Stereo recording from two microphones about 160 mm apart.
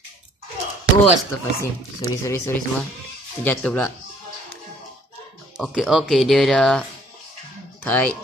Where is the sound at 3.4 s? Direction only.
5° left (ahead or behind).